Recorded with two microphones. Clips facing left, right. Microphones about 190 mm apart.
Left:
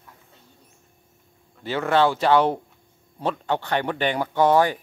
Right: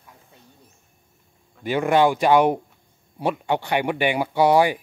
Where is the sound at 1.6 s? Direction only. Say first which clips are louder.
Right 2 dB; 15° right (ahead or behind).